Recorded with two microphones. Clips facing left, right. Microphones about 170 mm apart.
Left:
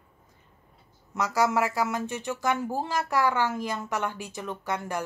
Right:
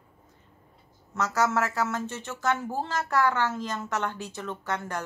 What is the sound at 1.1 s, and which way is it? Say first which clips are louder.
Speech: left 1 dB; 10° left (ahead or behind).